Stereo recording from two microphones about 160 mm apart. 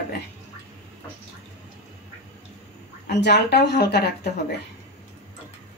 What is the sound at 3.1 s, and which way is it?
Speech, 90° left.